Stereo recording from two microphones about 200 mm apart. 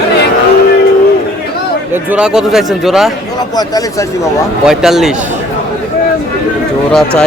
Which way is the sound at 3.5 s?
20° left (ahead or behind).